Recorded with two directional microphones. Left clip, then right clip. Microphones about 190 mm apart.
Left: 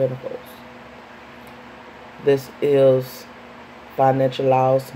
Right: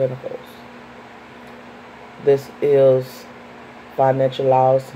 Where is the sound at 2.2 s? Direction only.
10° left (ahead or behind).